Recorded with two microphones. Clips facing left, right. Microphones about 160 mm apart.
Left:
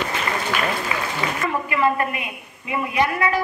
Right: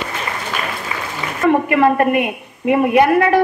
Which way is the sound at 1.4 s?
60° right (ahead or behind).